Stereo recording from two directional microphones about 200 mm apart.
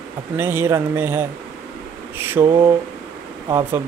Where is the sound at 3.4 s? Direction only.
15° right (ahead or behind).